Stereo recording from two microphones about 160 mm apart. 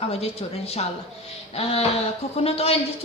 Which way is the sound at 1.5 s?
40° left (ahead or behind).